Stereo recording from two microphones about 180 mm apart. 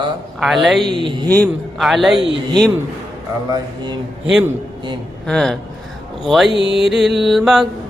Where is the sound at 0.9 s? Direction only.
25° right (ahead or behind).